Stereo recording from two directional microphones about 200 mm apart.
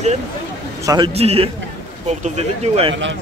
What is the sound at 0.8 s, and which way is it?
A man's voice, 20° right (ahead or behind).